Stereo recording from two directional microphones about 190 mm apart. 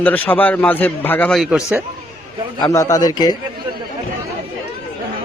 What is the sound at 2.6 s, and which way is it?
Speech, 15° left (ahead or behind).